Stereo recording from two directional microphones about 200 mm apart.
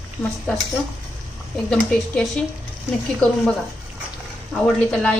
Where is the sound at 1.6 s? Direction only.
5° left (ahead or behind).